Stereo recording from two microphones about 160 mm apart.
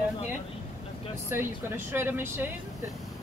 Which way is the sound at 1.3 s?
15° right (ahead or behind).